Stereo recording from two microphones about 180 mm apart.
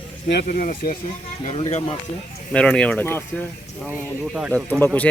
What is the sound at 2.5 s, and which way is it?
Speech, 5° left (ahead or behind).